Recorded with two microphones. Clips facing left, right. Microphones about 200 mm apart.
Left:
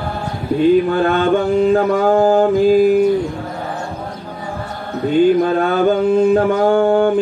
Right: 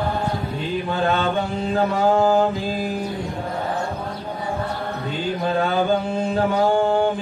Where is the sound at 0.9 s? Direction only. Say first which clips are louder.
Left 7 dB; 55° left (ahead or behind).